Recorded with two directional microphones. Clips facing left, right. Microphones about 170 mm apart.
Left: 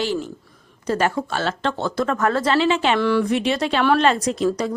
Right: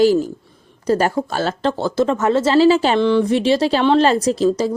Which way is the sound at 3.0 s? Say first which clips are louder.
Right 4 dB; 20° right (ahead or behind).